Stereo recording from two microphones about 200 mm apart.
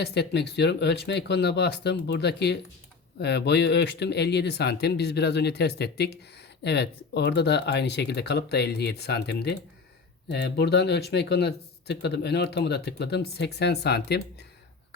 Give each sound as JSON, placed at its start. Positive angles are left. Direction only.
{"t": 0.0, "sound": "speech", "side_deg": 55}